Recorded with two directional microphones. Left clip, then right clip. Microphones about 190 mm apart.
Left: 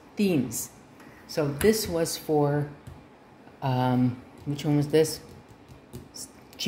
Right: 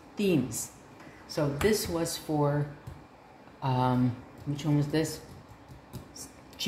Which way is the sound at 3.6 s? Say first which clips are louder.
Left 2 dB; 30° left (ahead or behind).